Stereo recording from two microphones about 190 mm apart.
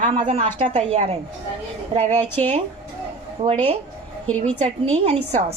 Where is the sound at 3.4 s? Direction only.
30° right (ahead or behind).